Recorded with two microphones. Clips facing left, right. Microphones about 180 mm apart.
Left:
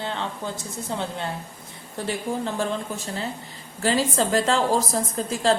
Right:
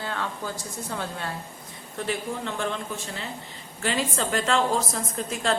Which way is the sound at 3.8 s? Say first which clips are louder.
Left 5 dB; 35° left (ahead or behind).